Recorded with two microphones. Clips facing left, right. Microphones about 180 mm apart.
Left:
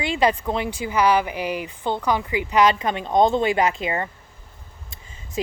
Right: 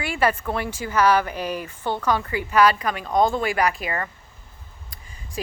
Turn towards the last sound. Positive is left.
turn(degrees=20)  # may be behind; listen again after turning